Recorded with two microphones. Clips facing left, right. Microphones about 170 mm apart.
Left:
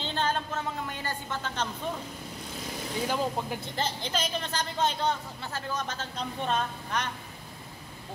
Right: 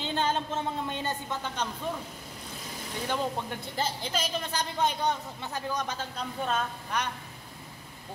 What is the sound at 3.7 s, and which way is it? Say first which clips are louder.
A man's voice: right 1 dB; 5° right (ahead or behind).